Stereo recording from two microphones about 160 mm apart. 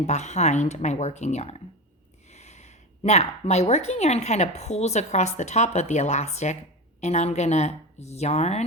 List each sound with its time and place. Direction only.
0.0 s a woman's voice: 45° left (ahead or behind)